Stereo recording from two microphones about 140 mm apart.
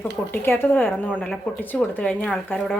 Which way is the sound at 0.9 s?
Centre (ahead or behind).